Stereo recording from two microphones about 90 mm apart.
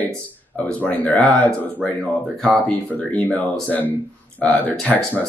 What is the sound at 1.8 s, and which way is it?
Speech, centre (ahead or behind).